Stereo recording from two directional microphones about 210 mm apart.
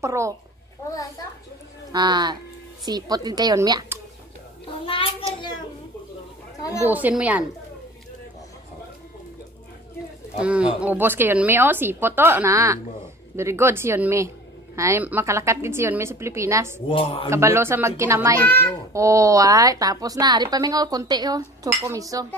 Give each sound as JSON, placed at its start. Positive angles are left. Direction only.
{"t": 0.0, "sound": "a woman's voice", "side_deg": -15}
{"t": 1.9, "sound": "a woman's voice", "side_deg": -20}
{"t": 4.8, "sound": "a sound", "side_deg": 25}
{"t": 6.6, "sound": "a child's voice", "side_deg": 15}
{"t": 6.9, "sound": "a woman's voice", "side_deg": -10}
{"t": 10.4, "sound": "a woman's voice", "side_deg": -5}
{"t": 16.9, "sound": "speech", "side_deg": 25}
{"t": 17.3, "sound": "a woman's voice", "side_deg": -10}
{"t": 18.4, "sound": "a child's voice", "side_deg": 10}
{"t": 18.9, "sound": "a woman's voice", "side_deg": -15}